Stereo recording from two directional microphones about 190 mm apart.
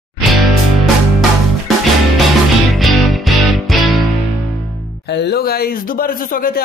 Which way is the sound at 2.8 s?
Centre (ahead or behind).